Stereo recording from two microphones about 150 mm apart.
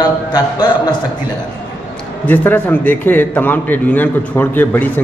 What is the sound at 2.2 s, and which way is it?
A man's voice, 10° left (ahead or behind).